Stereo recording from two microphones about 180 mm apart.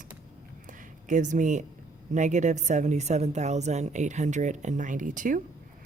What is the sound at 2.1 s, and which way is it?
A woman's voice, 40° right (ahead or behind).